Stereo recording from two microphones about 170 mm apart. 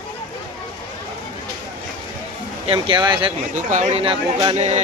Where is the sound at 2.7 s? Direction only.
30° right (ahead or behind).